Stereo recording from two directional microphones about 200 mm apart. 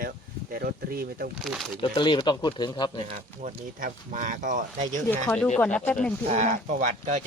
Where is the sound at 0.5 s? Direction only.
50° right (ahead or behind).